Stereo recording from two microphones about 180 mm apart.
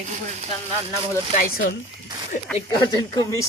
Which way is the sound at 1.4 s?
55° left (ahead or behind).